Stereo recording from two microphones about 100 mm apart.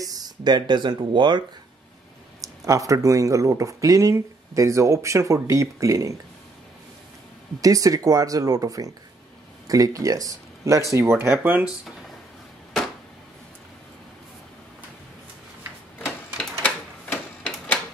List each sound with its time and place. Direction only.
0.0 s speech: 40° right (ahead or behind)
2.4 s speech: 30° right (ahead or behind)
7.6 s speech: 35° right (ahead or behind); by 11.7 s 20° right (ahead or behind)
16.6 s printer: 15° left (ahead or behind)